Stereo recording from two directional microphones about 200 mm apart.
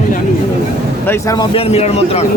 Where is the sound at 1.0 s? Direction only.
15° left (ahead or behind).